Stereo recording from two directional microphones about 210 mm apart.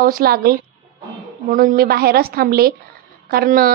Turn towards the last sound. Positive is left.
turn(degrees=-45)  # may be behind; listen again after turning